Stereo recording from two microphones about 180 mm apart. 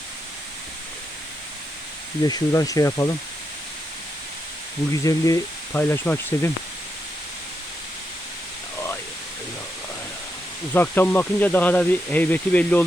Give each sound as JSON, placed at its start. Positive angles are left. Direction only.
{"t": 2.2, "sound": "speech", "side_deg": 20}
{"t": 5.0, "sound": "speech", "side_deg": 20}
{"t": 10.8, "sound": "speech", "side_deg": 10}